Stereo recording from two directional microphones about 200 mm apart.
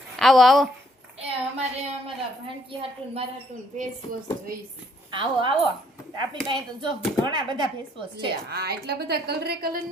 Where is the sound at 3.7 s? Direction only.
40° right (ahead or behind).